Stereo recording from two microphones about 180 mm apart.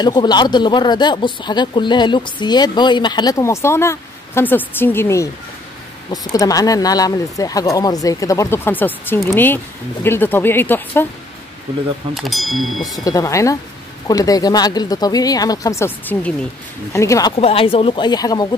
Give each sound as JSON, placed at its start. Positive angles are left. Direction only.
{"t": 0.0, "sound": "speech", "side_deg": 25}
{"t": 6.3, "sound": "speech", "side_deg": 20}
{"t": 12.1, "sound": "speech", "side_deg": 0}
{"t": 13.0, "sound": "speech", "side_deg": 20}
{"t": 17.4, "sound": "speech", "side_deg": 30}